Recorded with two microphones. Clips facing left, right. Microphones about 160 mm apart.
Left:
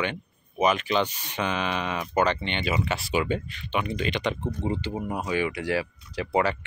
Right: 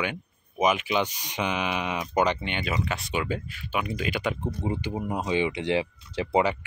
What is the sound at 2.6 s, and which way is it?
Speech, centre (ahead or behind).